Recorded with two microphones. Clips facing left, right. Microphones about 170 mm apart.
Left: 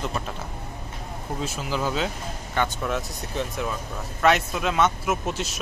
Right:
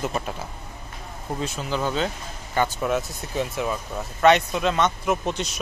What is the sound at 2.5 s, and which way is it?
Speech, 5° right (ahead or behind).